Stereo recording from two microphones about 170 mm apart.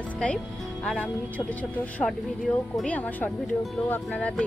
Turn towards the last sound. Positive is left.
turn(degrees=10)  # may be behind; listen again after turning